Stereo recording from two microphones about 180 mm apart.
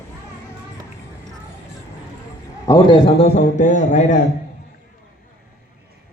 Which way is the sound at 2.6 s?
25° left (ahead or behind).